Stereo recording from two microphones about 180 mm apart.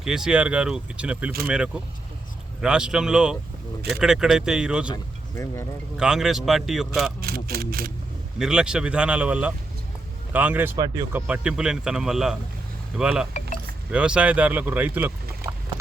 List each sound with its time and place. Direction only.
0.0 s speech: 5° right (ahead or behind)
5.3 s speech: 15° left (ahead or behind)
6.0 s speech: 5° right (ahead or behind)
7.2 s speech: 60° right (ahead or behind)
8.4 s speech: 5° right (ahead or behind)
11.3 s speech: 5° right (ahead or behind)